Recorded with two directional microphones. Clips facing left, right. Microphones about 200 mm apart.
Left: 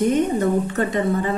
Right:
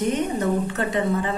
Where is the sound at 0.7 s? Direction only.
40° left (ahead or behind).